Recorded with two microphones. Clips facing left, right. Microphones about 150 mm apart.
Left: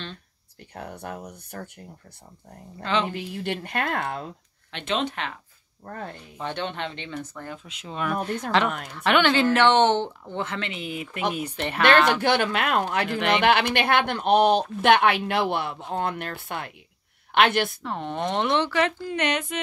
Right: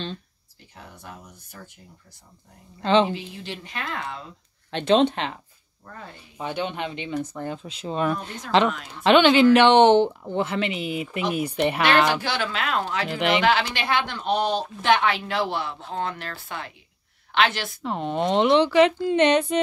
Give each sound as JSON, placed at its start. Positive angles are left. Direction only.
{"t": 0.7, "sound": "a woman's voice", "side_deg": 60}
{"t": 2.8, "sound": "speech", "side_deg": -30}
{"t": 3.1, "sound": "a woman's voice", "side_deg": 55}
{"t": 4.6, "sound": "speech", "side_deg": -35}
{"t": 5.9, "sound": "speech", "side_deg": 50}
{"t": 6.3, "sound": "speech", "side_deg": -10}
{"t": 8.2, "sound": "speech", "side_deg": 50}
{"t": 8.5, "sound": "speech", "side_deg": -25}
{"t": 12.2, "sound": "a woman's voice", "side_deg": 55}
{"t": 17.8, "sound": "speech", "side_deg": -15}